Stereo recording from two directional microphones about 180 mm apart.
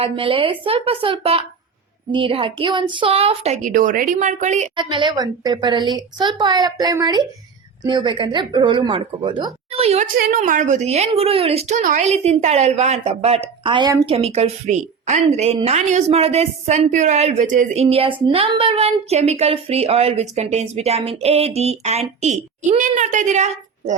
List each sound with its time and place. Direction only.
0.0 s a woman's voice: 30° right (ahead or behind)
4.8 s a woman's voice: 25° right (ahead or behind)
10.2 s a woman's voice: 50° right (ahead or behind); by 14.0 s 25° right (ahead or behind)
14.1 s a woman's voice: 35° right (ahead or behind)